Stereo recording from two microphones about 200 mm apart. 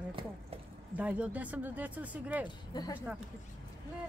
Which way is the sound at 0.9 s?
5° right (ahead or behind).